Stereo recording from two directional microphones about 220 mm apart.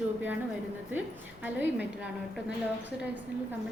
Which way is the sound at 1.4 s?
5° right (ahead or behind).